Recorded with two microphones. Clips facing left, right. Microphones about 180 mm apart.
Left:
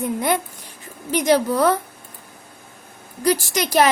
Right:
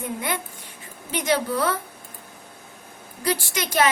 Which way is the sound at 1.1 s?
40° left (ahead or behind).